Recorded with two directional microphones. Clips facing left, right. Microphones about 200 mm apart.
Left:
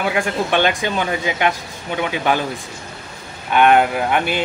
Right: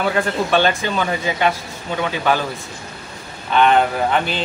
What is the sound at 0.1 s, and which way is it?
Speech, 15° left (ahead or behind).